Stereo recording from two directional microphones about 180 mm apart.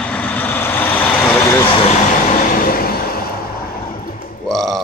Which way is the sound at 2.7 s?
55° left (ahead or behind).